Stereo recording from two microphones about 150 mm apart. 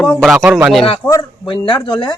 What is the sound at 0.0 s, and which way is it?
Speech, 5° left (ahead or behind).